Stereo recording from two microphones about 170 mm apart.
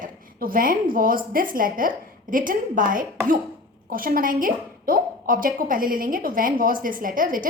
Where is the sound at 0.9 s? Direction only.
55° right (ahead or behind).